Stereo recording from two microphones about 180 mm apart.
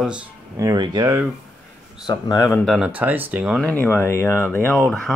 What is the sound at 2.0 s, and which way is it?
Speech, 20° left (ahead or behind).